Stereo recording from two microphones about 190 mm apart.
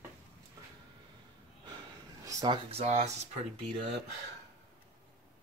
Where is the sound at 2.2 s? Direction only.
25° right (ahead or behind).